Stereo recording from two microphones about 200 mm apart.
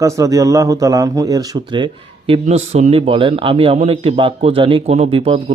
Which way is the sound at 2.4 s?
35° right (ahead or behind).